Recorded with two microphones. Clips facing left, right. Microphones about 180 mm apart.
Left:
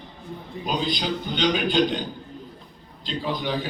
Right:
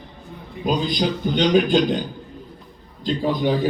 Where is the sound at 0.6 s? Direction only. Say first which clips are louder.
Right 5 dB; 45° right (ahead or behind).